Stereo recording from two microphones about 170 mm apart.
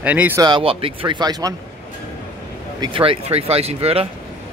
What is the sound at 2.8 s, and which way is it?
Speech, 30° right (ahead or behind).